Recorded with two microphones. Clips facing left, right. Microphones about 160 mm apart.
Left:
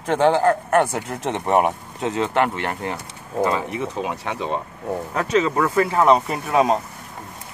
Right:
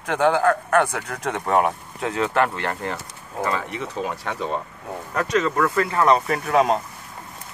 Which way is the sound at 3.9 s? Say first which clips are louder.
Left 1 dB; 10° left (ahead or behind).